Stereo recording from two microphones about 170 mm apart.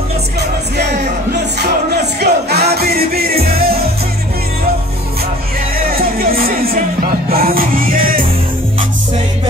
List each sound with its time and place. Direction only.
0.4 s music: 75° right (ahead or behind)
5.8 s music: 60° right (ahead or behind)